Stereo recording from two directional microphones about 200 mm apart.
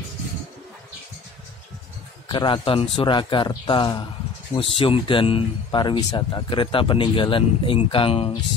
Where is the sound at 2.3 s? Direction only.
25° left (ahead or behind).